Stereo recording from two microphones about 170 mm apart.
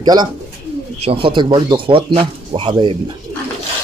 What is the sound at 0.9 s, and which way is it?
Speech, 35° right (ahead or behind).